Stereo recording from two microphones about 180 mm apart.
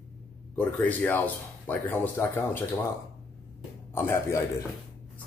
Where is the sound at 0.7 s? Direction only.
10° left (ahead or behind).